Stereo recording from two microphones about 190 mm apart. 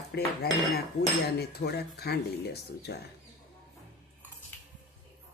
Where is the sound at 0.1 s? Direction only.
60° left (ahead or behind).